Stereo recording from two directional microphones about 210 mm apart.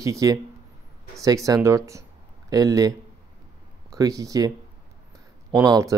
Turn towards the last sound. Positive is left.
turn(degrees=-15)  # may be behind; listen again after turning